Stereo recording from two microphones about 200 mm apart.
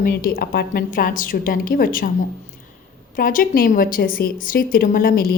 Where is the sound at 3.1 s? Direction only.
45° left (ahead or behind).